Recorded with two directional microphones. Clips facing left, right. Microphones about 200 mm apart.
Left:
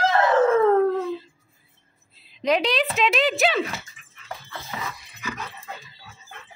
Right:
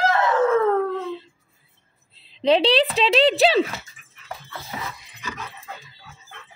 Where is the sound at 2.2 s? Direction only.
30° right (ahead or behind).